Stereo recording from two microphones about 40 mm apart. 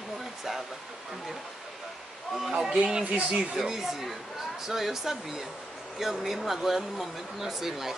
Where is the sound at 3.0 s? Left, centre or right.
Right.